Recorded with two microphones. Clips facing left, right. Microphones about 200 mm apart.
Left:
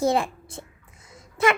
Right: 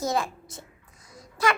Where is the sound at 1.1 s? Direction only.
25° left (ahead or behind).